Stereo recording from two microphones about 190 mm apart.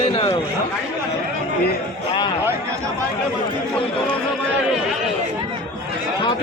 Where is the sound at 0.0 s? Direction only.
30° left (ahead or behind).